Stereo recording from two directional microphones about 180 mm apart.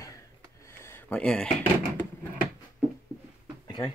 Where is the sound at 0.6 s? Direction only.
15° left (ahead or behind).